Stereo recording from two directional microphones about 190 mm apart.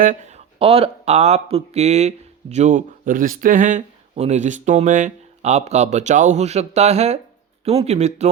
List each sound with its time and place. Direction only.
0.0 s speech: 40° right (ahead or behind)